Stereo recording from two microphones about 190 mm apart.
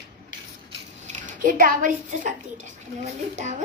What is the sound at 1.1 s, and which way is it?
A woman's voice, 45° right (ahead or behind).